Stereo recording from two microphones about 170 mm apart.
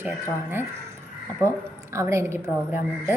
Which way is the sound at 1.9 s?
15° right (ahead or behind).